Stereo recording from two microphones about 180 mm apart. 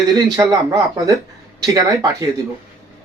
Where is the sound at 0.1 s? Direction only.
25° right (ahead or behind).